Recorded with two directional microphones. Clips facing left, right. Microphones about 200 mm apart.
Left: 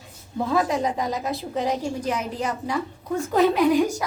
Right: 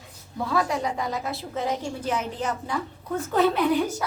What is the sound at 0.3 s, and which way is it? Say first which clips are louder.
A woman's voice: left 3 dB; 20° left (ahead or behind).